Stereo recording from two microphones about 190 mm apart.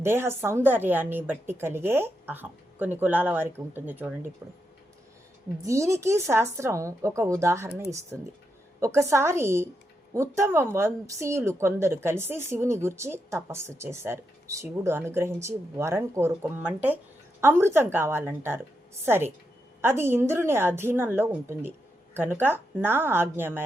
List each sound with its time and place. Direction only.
0.0 s a woman's voice: 10° right (ahead or behind)
5.6 s a woman's voice: 15° right (ahead or behind)